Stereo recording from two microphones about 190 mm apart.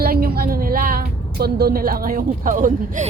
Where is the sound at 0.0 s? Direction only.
55° right (ahead or behind).